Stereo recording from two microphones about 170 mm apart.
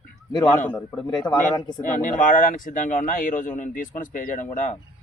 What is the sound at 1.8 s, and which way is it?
Speech, 50° left (ahead or behind).